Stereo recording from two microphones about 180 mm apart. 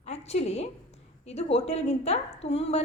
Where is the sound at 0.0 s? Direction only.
35° left (ahead or behind).